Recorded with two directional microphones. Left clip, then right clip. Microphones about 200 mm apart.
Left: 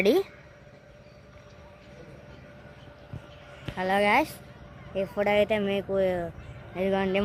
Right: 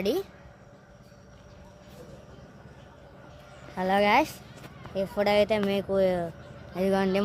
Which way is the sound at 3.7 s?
5° right (ahead or behind).